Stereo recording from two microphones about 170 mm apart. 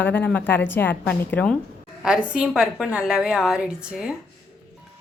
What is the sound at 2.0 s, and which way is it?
A woman's voice, 5° right (ahead or behind).